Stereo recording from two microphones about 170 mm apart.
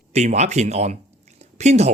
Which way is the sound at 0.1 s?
40° right (ahead or behind).